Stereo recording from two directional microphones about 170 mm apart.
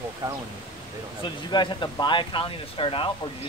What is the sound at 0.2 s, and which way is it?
Speech, 20° right (ahead or behind).